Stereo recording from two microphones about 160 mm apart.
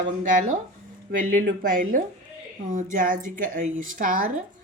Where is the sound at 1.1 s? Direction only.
60° right (ahead or behind).